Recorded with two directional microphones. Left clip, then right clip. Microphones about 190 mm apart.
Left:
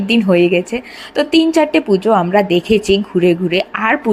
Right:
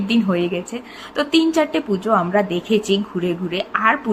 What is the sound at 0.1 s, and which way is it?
A woman's voice, 35° left (ahead or behind).